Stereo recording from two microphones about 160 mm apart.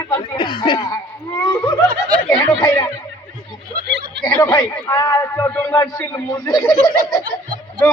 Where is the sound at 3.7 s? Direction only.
90° right.